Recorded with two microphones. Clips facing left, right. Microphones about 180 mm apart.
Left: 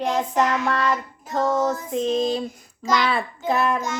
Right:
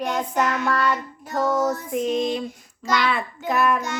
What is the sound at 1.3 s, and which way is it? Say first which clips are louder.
Child singing: even; 25° left (ahead or behind).